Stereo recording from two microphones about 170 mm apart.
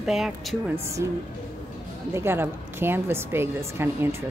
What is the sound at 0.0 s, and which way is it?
Speech, centre (ahead or behind).